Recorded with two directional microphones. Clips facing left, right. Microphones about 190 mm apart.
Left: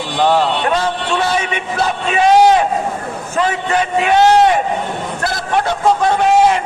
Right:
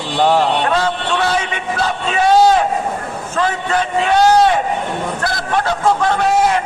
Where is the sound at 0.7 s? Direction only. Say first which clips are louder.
Even; 10° left (ahead or behind).